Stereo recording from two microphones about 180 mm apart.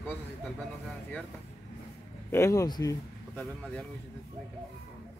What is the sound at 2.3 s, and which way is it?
Speech, 15° left (ahead or behind).